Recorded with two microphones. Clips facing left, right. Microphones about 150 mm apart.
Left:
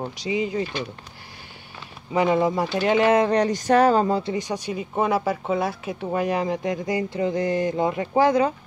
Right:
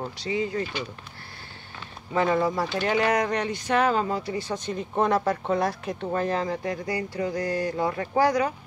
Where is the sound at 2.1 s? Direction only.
15° left (ahead or behind).